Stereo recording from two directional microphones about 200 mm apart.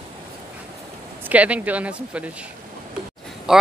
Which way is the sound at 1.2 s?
5° right (ahead or behind).